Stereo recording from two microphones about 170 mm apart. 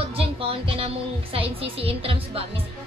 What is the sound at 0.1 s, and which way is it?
Music, 35° right (ahead or behind).